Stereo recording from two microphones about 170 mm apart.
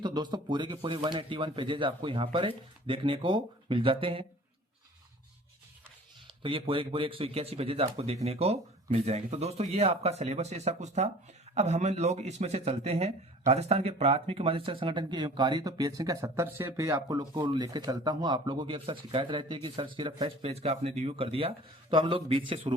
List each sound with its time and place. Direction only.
0.0 s speech: 25° right (ahead or behind)
6.4 s speech: 30° right (ahead or behind)